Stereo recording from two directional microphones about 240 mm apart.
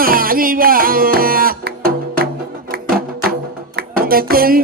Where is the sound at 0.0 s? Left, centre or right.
Right.